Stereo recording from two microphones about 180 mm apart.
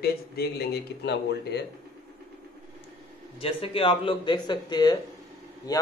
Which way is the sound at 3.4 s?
30° left (ahead or behind).